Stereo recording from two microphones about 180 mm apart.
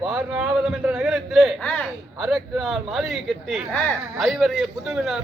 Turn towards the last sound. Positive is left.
turn(degrees=-5)  # may be behind; listen again after turning